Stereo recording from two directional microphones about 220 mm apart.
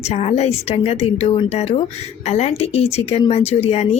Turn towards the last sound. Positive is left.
turn(degrees=30)  # may be behind; listen again after turning